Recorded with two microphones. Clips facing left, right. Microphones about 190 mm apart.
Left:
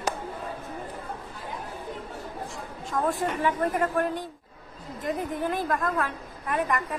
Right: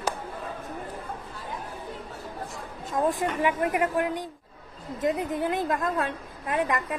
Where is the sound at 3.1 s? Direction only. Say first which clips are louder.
Even; 15° right (ahead or behind).